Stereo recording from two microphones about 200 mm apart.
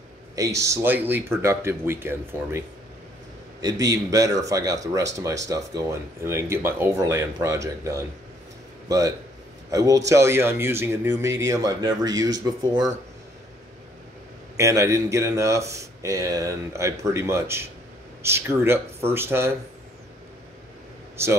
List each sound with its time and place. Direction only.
0.6 s speech: 15° right (ahead or behind)
3.6 s a man's voice: 15° right (ahead or behind)
14.6 s speech: 15° right (ahead or behind)